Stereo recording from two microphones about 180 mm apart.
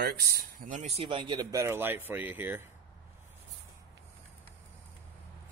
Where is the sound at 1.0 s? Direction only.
25° right (ahead or behind); by 2.6 s 10° right (ahead or behind).